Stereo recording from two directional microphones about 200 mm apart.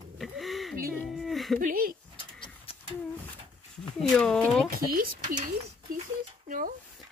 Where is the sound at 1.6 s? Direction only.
45° right (ahead or behind).